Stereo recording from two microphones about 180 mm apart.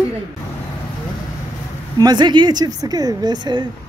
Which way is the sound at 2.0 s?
20° right (ahead or behind).